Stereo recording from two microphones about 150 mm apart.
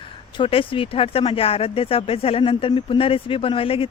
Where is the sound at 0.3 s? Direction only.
35° left (ahead or behind).